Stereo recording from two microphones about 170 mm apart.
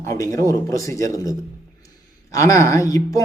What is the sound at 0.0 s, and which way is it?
Speech, 20° left (ahead or behind).